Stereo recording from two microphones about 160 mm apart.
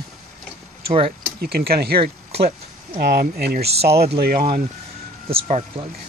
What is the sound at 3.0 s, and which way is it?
Speech, 90° right.